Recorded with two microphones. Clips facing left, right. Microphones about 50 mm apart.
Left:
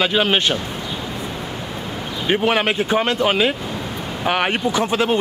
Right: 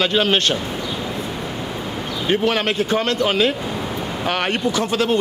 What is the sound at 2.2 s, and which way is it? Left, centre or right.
A man's voice, centre.